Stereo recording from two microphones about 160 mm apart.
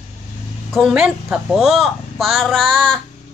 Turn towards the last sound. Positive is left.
turn(degrees=5)  # may be behind; listen again after turning